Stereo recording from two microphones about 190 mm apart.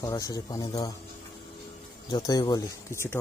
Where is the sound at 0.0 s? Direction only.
15° left (ahead or behind).